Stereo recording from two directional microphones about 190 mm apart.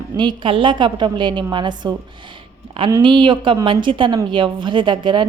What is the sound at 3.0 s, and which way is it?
A woman's voice, 25° right (ahead or behind).